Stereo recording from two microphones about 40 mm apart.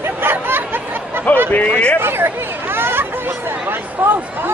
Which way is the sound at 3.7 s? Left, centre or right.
Right.